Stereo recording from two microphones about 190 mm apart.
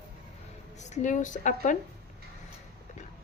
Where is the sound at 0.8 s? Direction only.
40° left (ahead or behind).